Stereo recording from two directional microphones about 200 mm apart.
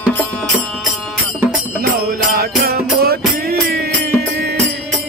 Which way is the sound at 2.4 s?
50° right (ahead or behind).